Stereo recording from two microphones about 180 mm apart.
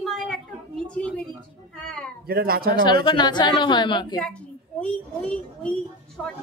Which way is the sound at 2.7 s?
25° left (ahead or behind).